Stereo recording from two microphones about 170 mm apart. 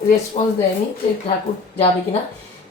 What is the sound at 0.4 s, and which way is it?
Speech, 40° left (ahead or behind).